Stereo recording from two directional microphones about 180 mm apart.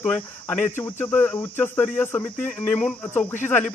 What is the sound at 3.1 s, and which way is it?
Speech, 10° left (ahead or behind).